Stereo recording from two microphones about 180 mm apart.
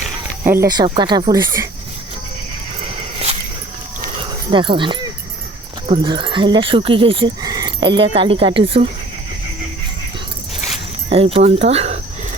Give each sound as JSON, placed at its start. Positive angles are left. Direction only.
{"t": 0.4, "sound": "speech", "side_deg": -10}
{"t": 0.7, "sound": "speech", "side_deg": -25}
{"t": 4.5, "sound": "speech", "side_deg": -25}
{"t": 11.1, "sound": "speech", "side_deg": -30}